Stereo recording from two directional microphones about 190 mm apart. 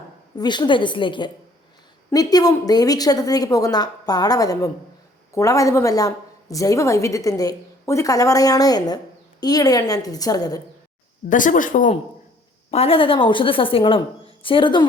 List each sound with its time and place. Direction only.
0.3 s a woman's voice: 25° left (ahead or behind)
11.3 s speech: 45° left (ahead or behind)
12.7 s a woman's voice: 30° left (ahead or behind)